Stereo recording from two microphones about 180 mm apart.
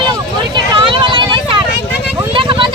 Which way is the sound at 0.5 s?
30° right (ahead or behind).